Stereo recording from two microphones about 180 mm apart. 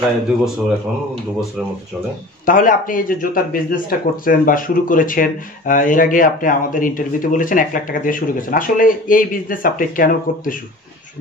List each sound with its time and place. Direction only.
2.4 s speech: 50° left (ahead or behind)